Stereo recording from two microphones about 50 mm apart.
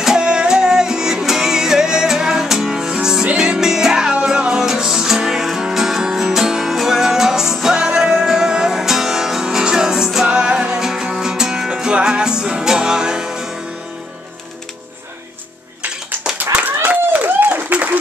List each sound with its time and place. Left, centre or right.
0.0 s music: centre
10.2 s music: centre
16.8 s a sound: right